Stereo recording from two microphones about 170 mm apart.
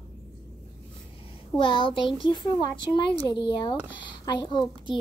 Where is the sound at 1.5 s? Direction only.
30° left (ahead or behind).